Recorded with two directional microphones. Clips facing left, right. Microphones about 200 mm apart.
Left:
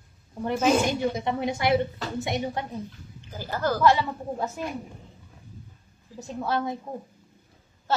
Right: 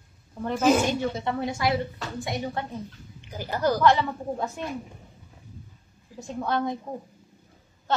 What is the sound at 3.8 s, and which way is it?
Speech, 5° left (ahead or behind).